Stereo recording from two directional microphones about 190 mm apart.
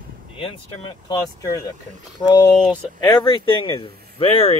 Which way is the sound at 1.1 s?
20° left (ahead or behind).